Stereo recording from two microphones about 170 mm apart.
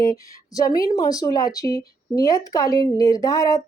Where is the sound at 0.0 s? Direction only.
20° left (ahead or behind).